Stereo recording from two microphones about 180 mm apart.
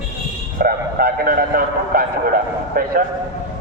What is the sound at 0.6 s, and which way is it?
Speech, 55° right (ahead or behind).